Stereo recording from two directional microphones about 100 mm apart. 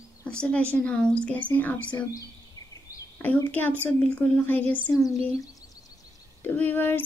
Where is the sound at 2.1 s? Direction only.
35° left (ahead or behind).